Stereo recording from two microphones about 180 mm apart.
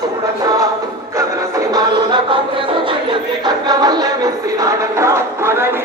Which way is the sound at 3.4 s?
20° right (ahead or behind).